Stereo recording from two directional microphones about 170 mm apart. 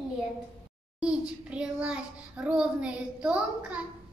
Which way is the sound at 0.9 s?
5° right (ahead or behind).